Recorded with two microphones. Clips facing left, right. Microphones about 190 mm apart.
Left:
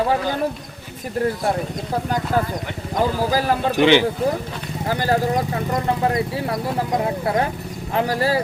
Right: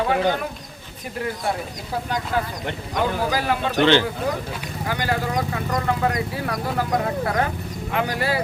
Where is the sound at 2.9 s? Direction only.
35° left (ahead or behind).